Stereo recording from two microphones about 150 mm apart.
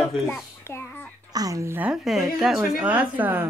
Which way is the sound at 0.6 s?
15° left (ahead or behind).